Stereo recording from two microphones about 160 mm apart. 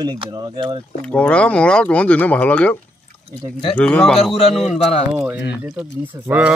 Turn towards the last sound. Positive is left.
turn(degrees=-5)  # may be behind; listen again after turning